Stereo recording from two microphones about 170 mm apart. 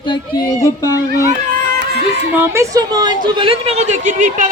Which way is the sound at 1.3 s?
55° right (ahead or behind).